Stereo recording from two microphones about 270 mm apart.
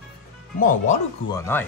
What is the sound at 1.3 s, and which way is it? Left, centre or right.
Speech, centre.